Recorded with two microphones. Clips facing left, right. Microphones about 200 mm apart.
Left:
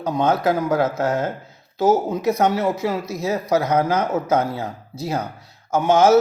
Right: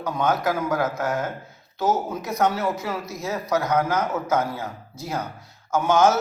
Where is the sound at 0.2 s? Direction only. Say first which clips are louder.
Left 4 dB; 25° left (ahead or behind).